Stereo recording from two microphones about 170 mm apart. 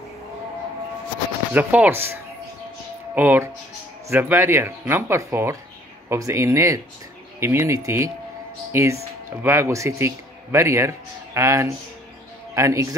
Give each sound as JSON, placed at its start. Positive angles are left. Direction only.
{"t": 1.5, "sound": "a man's voice", "side_deg": -10}
{"t": 3.2, "sound": "a man's voice", "side_deg": -10}